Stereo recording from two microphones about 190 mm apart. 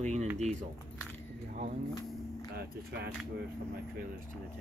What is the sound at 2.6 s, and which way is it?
Speech, 60° right (ahead or behind).